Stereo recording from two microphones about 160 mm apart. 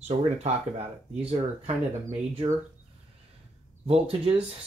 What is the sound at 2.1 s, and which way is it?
Speech, 45° right (ahead or behind).